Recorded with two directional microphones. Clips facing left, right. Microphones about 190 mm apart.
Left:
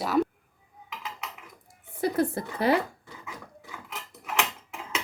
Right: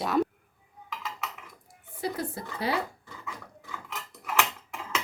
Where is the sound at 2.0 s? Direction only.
55° left (ahead or behind).